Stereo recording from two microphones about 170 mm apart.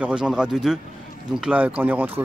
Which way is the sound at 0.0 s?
5° right (ahead or behind).